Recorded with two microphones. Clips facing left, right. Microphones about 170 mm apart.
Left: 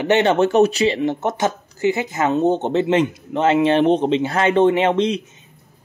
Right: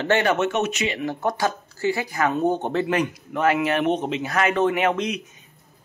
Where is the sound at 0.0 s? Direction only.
20° left (ahead or behind).